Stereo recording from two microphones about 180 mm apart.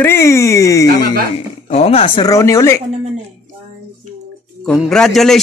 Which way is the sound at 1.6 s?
35° left (ahead or behind).